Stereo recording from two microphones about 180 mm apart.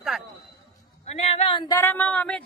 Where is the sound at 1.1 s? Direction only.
35° left (ahead or behind).